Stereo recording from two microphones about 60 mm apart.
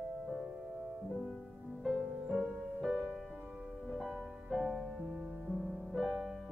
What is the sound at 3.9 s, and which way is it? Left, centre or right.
Music, centre.